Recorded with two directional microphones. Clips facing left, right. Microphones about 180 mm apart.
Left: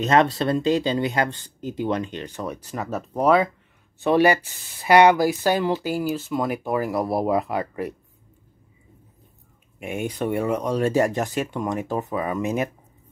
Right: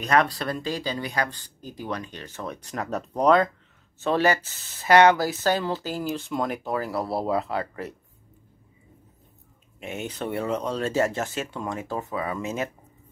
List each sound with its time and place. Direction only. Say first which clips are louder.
0.0 s speech: left 4 dB; 25° left (ahead or behind)
9.8 s speech: left 5 dB; 10° left (ahead or behind)